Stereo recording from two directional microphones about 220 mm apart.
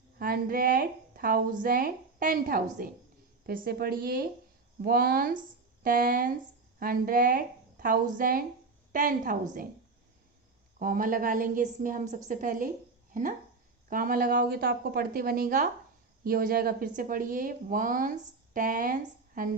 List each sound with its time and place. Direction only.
0.2 s a woman's voice: 40° right (ahead or behind)
10.8 s speech: 40° right (ahead or behind)
13.9 s speech: 40° right (ahead or behind)